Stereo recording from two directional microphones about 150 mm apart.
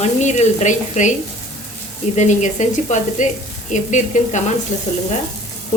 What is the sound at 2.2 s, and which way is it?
A woman's voice, 50° left (ahead or behind).